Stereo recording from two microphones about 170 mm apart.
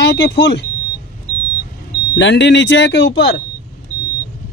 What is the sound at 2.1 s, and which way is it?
Speech, 90° left.